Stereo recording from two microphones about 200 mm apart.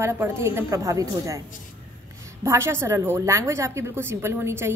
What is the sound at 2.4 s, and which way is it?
A woman's voice, 15° right (ahead or behind).